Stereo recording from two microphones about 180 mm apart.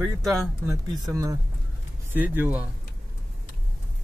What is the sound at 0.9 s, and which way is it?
Speech, 20° right (ahead or behind).